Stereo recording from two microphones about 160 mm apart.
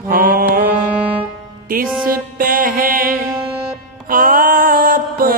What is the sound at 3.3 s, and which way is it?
Music, 5° right (ahead or behind).